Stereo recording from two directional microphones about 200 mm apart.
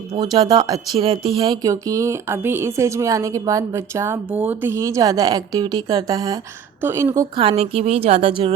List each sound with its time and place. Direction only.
0.1 s speech: 20° right (ahead or behind)